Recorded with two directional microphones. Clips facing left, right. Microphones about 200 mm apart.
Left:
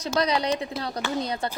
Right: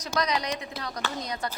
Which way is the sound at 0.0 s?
30° left (ahead or behind).